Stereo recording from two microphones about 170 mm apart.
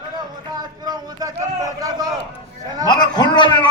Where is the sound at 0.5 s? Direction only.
20° right (ahead or behind).